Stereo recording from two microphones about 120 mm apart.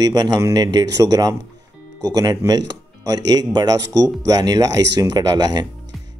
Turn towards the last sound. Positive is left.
turn(degrees=-35)  # may be behind; listen again after turning